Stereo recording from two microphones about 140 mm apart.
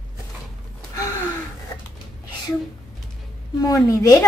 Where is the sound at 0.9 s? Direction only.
20° left (ahead or behind).